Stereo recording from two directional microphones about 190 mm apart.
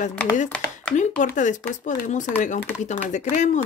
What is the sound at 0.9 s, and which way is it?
A child's voice, 40° left (ahead or behind).